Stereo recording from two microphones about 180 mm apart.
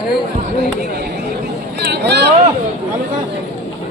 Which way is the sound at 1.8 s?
65° right (ahead or behind).